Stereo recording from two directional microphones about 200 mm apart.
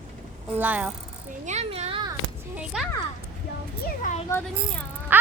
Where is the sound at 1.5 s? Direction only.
35° right (ahead or behind).